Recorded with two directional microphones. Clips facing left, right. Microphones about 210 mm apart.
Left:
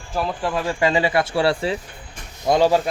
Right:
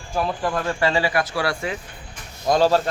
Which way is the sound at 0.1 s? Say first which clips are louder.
Even; centre (ahead or behind).